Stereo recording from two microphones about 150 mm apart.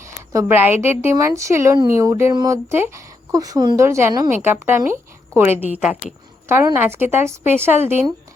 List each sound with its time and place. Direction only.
0.3 s a woman's voice: 15° right (ahead or behind)
6.7 s speech: 15° right (ahead or behind)